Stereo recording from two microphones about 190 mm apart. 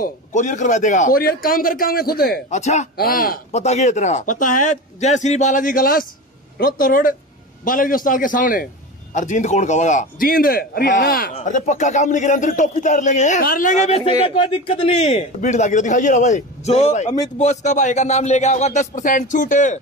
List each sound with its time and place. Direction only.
0.0 s a man's voice: 40° left (ahead or behind)
2.5 s a man's voice: 35° left (ahead or behind)